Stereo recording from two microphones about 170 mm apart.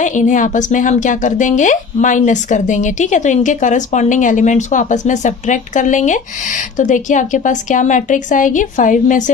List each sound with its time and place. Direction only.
0.0 s a woman's voice: 45° left (ahead or behind)